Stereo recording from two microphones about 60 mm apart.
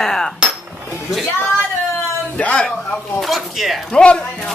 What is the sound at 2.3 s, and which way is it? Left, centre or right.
Speech, left.